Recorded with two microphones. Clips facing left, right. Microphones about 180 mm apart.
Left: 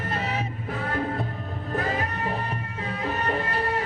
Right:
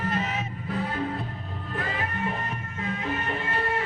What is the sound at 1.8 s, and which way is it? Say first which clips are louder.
Music: left 2 dB; 40° left (ahead or behind).